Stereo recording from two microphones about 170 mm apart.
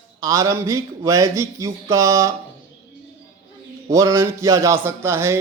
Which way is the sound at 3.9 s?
20° right (ahead or behind).